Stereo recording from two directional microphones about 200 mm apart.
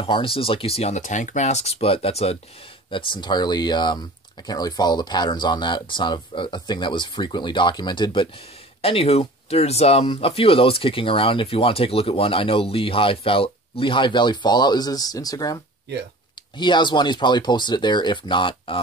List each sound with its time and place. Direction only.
0.0 s speech: 25° left (ahead or behind)